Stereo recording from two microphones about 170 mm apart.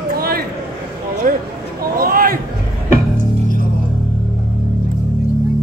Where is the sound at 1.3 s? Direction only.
55° right (ahead or behind).